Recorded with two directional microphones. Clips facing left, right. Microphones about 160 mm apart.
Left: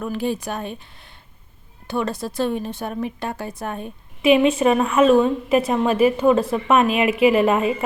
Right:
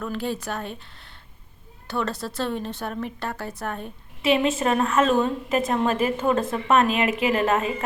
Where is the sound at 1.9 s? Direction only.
15° left (ahead or behind).